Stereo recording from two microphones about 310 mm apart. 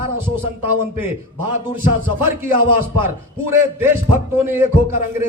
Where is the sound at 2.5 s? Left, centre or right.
Right.